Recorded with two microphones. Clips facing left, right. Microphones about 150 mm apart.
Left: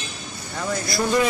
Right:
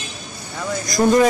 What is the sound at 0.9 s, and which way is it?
Speech, 45° right (ahead or behind).